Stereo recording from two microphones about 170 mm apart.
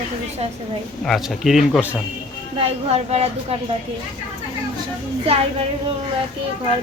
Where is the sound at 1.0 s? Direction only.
Centre (ahead or behind).